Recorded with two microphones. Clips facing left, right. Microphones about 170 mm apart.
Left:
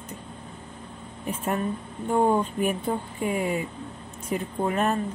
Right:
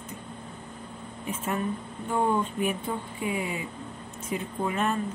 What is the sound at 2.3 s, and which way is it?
A woman's voice, 45° left (ahead or behind).